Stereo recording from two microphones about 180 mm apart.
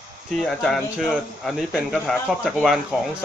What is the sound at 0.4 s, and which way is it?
Speech, 5° left (ahead or behind).